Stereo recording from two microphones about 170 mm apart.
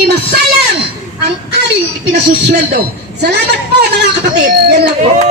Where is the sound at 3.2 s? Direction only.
75° right (ahead or behind).